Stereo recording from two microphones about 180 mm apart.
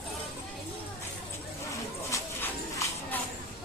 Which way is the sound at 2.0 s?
15° left (ahead or behind).